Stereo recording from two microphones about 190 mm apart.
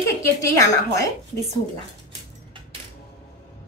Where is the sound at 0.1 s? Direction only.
15° left (ahead or behind).